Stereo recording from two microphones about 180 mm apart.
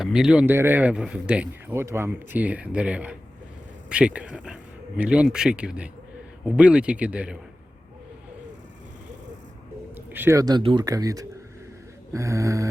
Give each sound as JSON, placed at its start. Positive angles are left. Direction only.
{"t": 0.0, "sound": "speech", "side_deg": -5}
{"t": 9.9, "sound": "a man's voice", "side_deg": -10}